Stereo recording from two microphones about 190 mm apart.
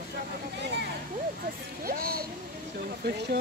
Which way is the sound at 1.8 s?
50° right (ahead or behind).